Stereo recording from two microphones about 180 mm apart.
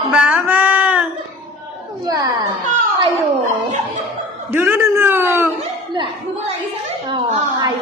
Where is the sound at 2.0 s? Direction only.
20° right (ahead or behind).